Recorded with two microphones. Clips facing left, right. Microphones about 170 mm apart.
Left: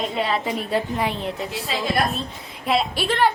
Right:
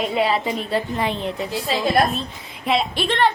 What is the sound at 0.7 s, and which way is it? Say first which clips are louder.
Speech: left 1 dB; 10° left (ahead or behind).